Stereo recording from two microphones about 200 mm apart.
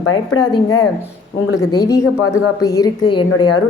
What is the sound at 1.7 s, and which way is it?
A woman's voice, 15° left (ahead or behind).